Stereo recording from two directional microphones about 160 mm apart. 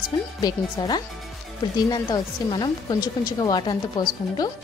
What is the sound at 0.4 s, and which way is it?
Speech, 25° left (ahead or behind).